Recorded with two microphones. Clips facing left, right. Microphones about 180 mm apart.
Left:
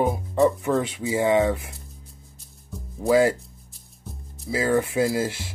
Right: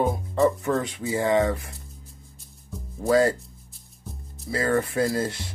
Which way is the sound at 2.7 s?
5° left (ahead or behind).